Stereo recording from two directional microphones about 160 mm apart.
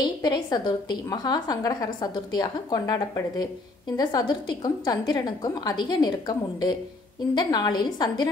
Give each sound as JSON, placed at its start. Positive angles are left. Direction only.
{"t": 0.0, "sound": "a woman's voice", "side_deg": 25}